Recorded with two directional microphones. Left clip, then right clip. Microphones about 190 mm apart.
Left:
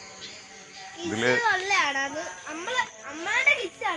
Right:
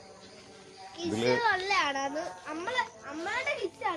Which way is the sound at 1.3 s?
30° left (ahead or behind).